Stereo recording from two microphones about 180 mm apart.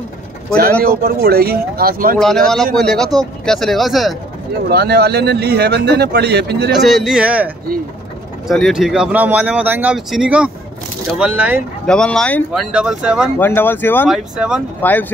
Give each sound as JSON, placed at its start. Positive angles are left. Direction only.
{"t": 1.0, "sound": "speech", "side_deg": -60}
{"t": 2.1, "sound": "speech", "side_deg": 0}
{"t": 4.6, "sound": "speech", "side_deg": -65}
{"t": 6.7, "sound": "speech", "side_deg": 0}
{"t": 11.8, "sound": "speech", "side_deg": 5}
{"t": 12.7, "sound": "speech", "side_deg": -5}
{"t": 13.4, "sound": "speech", "side_deg": 10}
{"t": 14.0, "sound": "speech", "side_deg": -5}
{"t": 14.8, "sound": "speech", "side_deg": 10}